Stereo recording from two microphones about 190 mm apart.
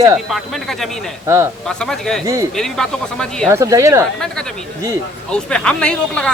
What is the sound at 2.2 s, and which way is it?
Speech, 15° right (ahead or behind).